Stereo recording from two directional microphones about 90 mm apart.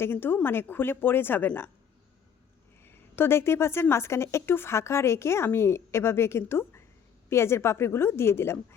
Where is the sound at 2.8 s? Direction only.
25° left (ahead or behind).